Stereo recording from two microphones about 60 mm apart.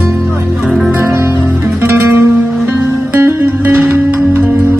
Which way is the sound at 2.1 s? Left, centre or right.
Right.